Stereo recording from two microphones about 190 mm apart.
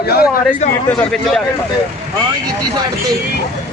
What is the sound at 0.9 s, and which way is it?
Speech, 5° left (ahead or behind).